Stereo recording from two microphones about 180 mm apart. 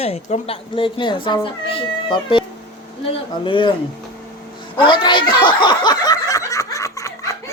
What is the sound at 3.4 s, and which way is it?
Speech, 25° left (ahead or behind).